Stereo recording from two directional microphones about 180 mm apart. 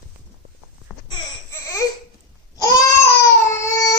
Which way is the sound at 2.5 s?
20° left (ahead or behind).